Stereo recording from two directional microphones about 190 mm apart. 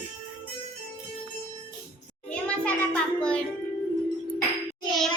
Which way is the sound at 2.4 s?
5° left (ahead or behind).